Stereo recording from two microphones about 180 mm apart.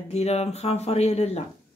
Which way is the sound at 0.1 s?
35° left (ahead or behind).